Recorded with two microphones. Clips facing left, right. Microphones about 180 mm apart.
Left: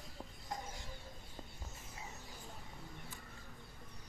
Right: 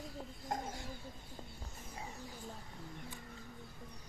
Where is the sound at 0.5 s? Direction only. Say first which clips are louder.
Right 5 dB; 50° right (ahead or behind).